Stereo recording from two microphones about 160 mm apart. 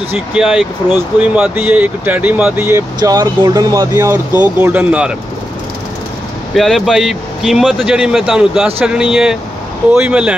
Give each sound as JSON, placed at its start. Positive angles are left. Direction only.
{"t": 0.1, "sound": "speech", "side_deg": -5}
{"t": 3.0, "sound": "speech", "side_deg": -25}
{"t": 6.5, "sound": "speech", "side_deg": 0}